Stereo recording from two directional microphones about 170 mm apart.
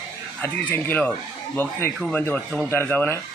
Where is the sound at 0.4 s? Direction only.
10° left (ahead or behind).